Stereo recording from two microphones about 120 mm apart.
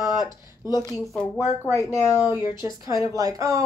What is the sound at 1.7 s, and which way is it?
Speech, 30° left (ahead or behind).